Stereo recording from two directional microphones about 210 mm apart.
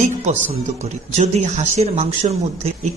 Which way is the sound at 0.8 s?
30° right (ahead or behind).